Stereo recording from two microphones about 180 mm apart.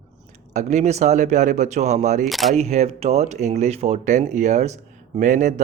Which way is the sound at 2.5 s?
40° right (ahead or behind).